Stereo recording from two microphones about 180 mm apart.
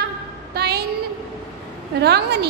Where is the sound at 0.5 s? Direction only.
65° right (ahead or behind).